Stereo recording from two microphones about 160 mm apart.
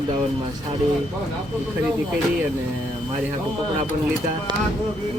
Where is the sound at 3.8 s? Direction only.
40° right (ahead or behind).